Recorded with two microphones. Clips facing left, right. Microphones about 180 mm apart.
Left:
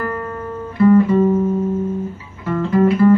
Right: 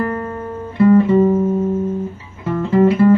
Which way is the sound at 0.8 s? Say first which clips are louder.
Right 1 dB; 25° right (ahead or behind).